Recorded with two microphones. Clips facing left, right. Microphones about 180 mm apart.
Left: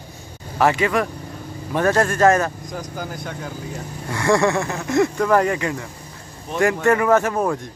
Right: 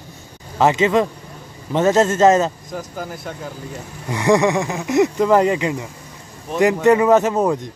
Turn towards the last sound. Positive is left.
turn(degrees=-20)  # may be behind; listen again after turning